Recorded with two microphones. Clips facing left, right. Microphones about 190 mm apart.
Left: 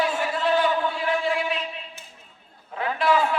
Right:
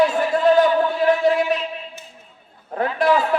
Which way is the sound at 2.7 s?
45° right (ahead or behind).